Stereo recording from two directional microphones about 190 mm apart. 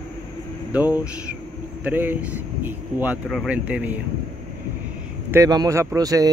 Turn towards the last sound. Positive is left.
turn(degrees=-20)  # may be behind; listen again after turning